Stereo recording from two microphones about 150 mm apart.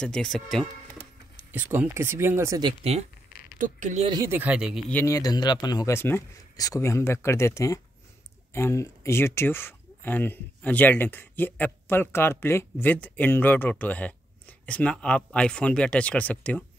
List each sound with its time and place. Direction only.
0.0 s speech: 5° left (ahead or behind)
1.3 s speech: 10° right (ahead or behind)
2.6 s speech: 45° right (ahead or behind)
3.5 s speech: 60° right (ahead or behind)
4.3 s speech: 10° right (ahead or behind)
5.0 s speech: 25° left (ahead or behind)